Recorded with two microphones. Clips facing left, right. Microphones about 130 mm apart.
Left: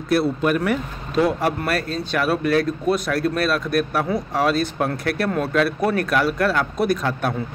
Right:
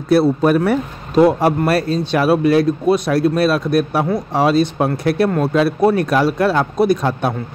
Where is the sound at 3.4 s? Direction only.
30° right (ahead or behind).